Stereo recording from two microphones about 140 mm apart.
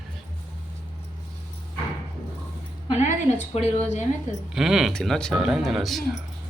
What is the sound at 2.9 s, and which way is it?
A woman's voice, 55° left (ahead or behind).